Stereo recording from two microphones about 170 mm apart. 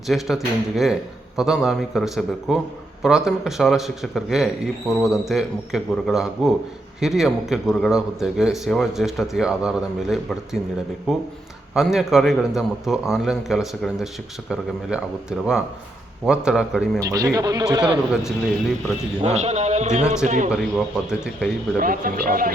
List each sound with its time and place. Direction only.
0.1 s a man's voice: centre (ahead or behind)
17.0 s speech: 20° right (ahead or behind)
19.2 s a man's voice: 40° right (ahead or behind)
20.5 s a man's voice: centre (ahead or behind)
21.8 s speech: 55° right (ahead or behind)